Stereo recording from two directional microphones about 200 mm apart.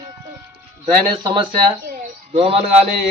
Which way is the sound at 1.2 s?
25° right (ahead or behind).